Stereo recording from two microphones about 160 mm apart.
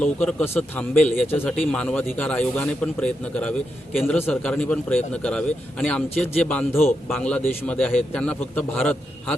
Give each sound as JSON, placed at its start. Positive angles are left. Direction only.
{"t": 0.0, "sound": "a man's voice", "side_deg": 5}